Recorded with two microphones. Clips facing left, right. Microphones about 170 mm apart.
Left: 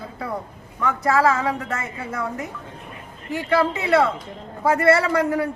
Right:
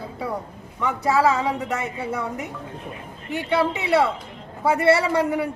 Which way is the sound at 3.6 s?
10° right (ahead or behind).